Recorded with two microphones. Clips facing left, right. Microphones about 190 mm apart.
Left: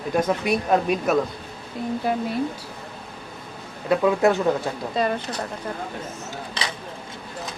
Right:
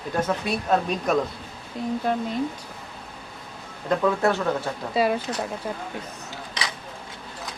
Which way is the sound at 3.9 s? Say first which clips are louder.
Left 3 dB; 15° left (ahead or behind).